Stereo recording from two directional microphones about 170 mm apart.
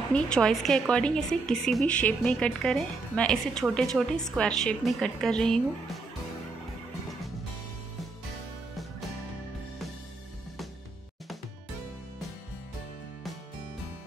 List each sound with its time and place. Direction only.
0.1 s a woman's voice: 5° left (ahead or behind)